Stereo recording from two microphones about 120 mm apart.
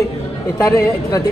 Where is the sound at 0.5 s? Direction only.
30° left (ahead or behind).